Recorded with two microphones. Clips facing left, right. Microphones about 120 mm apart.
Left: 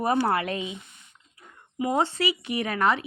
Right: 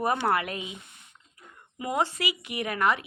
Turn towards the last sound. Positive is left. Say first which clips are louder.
# left 2 dB
turn(degrees=30)  # may be behind; listen again after turning